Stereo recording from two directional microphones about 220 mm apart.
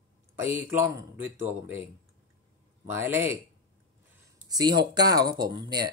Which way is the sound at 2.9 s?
10° right (ahead or behind).